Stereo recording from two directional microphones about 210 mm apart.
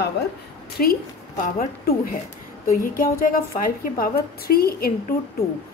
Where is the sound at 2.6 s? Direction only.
40° left (ahead or behind).